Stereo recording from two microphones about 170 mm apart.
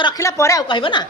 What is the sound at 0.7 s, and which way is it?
Speech, 30° left (ahead or behind).